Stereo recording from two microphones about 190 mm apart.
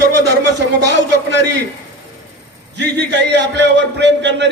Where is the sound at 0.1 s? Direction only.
65° right (ahead or behind).